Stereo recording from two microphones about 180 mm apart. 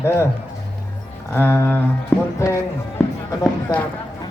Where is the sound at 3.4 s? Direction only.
10° left (ahead or behind).